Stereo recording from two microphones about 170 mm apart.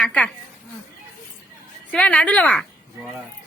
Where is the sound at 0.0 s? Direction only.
5° left (ahead or behind).